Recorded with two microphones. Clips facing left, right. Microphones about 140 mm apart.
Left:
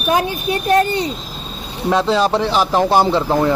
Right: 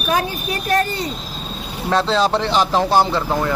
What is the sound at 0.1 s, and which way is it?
Speech, 20° left (ahead or behind).